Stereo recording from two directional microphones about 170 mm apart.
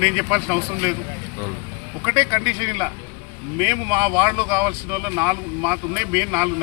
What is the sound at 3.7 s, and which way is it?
Speech, 5° right (ahead or behind).